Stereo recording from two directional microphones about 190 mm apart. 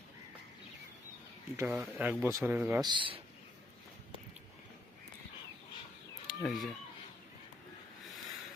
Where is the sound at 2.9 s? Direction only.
25° right (ahead or behind).